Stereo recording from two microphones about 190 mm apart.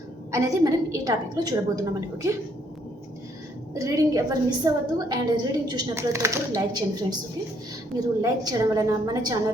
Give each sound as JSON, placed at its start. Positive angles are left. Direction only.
{"t": 0.3, "sound": "a woman's voice", "side_deg": -15}
{"t": 3.8, "sound": "a woman's voice", "side_deg": -20}